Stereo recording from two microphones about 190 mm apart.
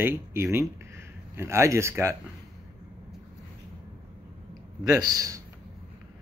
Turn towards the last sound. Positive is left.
turn(degrees=-20)  # may be behind; listen again after turning